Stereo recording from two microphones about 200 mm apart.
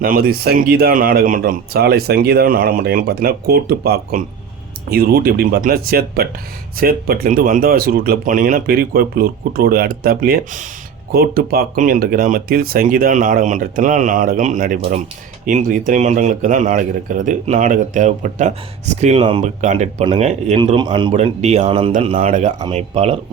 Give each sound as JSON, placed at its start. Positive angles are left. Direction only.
{"t": 0.0, "sound": "speech", "side_deg": -45}
{"t": 21.1, "sound": "speech", "side_deg": -35}